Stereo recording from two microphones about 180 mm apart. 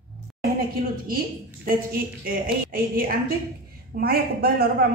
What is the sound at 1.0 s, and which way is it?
A man's voice, 55° right (ahead or behind).